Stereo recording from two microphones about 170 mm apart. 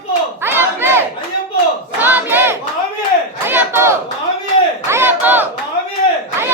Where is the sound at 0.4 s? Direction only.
15° right (ahead or behind).